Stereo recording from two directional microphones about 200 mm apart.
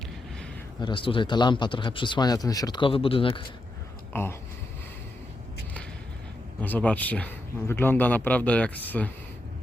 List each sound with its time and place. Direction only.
0.8 s speech: 25° left (ahead or behind)
4.1 s speech: 10° left (ahead or behind)
6.6 s speech: 10° left (ahead or behind)